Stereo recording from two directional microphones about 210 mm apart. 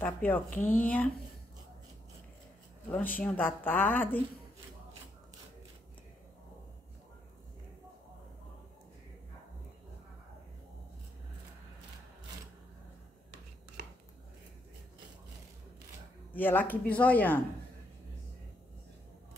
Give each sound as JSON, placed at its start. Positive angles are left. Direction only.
{"t": 0.0, "sound": "speech", "side_deg": 10}
{"t": 0.5, "sound": "speech", "side_deg": 40}
{"t": 0.7, "sound": "speech", "side_deg": 5}
{"t": 2.9, "sound": "speech", "side_deg": 10}
{"t": 16.3, "sound": "speech", "side_deg": 10}